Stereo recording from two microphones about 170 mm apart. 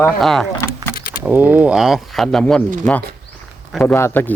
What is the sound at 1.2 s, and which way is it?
Speech, 10° right (ahead or behind).